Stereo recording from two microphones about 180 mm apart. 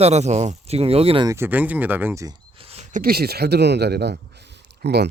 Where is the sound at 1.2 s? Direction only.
15° right (ahead or behind).